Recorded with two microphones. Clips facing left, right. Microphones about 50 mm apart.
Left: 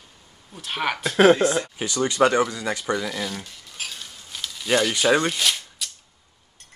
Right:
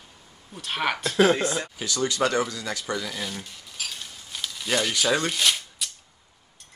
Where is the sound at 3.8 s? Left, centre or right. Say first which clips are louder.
Left 1 dB; left.